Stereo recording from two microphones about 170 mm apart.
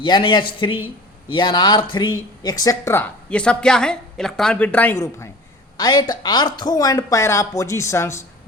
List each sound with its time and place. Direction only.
0.0 s a woman's voice: 30° left (ahead or behind)